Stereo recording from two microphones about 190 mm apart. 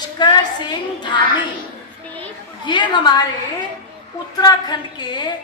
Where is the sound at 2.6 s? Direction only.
25° left (ahead or behind).